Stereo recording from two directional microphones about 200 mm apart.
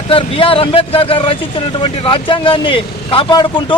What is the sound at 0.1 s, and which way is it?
Speech, 25° left (ahead or behind).